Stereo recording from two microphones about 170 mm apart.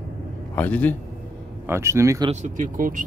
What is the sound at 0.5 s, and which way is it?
Speech, 10° left (ahead or behind).